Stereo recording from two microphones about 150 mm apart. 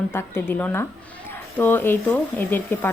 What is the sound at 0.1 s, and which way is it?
Speech, 15° left (ahead or behind).